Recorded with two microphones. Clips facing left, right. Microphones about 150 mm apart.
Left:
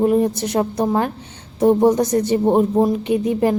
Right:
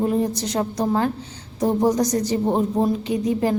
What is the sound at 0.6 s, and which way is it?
A woman's voice, 25° left (ahead or behind).